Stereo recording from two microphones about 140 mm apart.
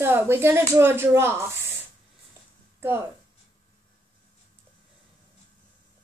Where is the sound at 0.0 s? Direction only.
15° right (ahead or behind).